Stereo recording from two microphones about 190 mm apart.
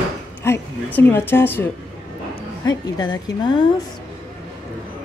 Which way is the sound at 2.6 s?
20° left (ahead or behind).